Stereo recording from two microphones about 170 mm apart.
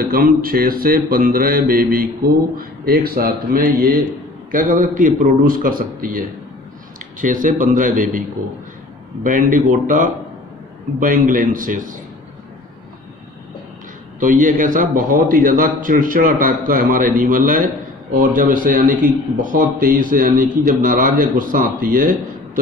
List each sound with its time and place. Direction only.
0.0 s mantra: 60° right (ahead or behind)
4.5 s a man's voice: 55° right (ahead or behind)
9.2 s a man's voice: 55° right (ahead or behind)
14.2 s a man's voice: 50° right (ahead or behind)